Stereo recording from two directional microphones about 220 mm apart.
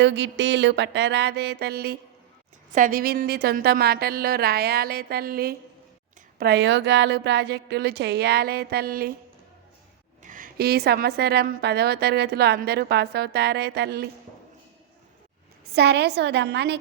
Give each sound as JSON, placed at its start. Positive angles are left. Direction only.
{"t": 0.0, "sound": "a woman's voice", "side_deg": -55}
{"t": 10.2, "sound": "a woman's voice", "side_deg": -35}
{"t": 15.7, "sound": "a woman's voice", "side_deg": -50}